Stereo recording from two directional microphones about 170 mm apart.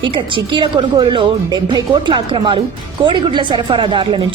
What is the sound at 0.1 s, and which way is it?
A woman's voice, 30° right (ahead or behind).